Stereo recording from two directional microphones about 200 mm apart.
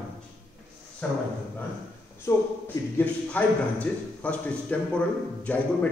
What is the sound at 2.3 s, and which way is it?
A man's voice, 15° left (ahead or behind).